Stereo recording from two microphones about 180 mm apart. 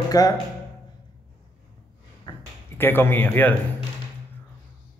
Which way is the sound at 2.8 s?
10° left (ahead or behind).